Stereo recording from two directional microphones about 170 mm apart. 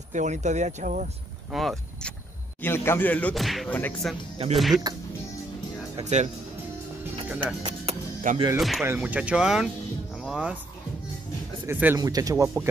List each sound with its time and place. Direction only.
0.1 s speech: 45° right (ahead or behind)
1.5 s speech: centre (ahead or behind)
2.6 s speech: 15° left (ahead or behind)
3.7 s speech: 10° left (ahead or behind)
4.6 s speech: centre (ahead or behind)
6.0 s speech: 40° right (ahead or behind)
7.6 s music: 45° right (ahead or behind)
8.5 s speech: centre (ahead or behind)
11.6 s speech: 10° right (ahead or behind)